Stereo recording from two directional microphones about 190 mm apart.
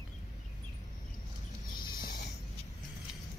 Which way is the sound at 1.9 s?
50° left (ahead or behind).